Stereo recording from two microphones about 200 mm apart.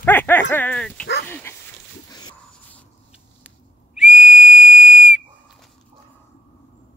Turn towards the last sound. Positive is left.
turn(degrees=0)  # may be behind; listen again after turning